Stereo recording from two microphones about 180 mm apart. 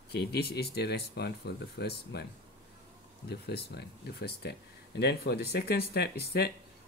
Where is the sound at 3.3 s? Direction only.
65° left (ahead or behind).